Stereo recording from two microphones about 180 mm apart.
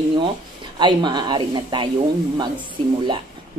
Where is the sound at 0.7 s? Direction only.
25° right (ahead or behind).